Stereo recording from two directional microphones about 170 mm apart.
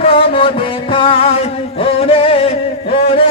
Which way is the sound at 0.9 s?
30° left (ahead or behind).